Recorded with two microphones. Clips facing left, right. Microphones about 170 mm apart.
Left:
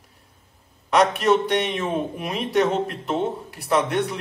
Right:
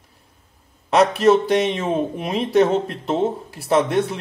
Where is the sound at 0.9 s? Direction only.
30° right (ahead or behind).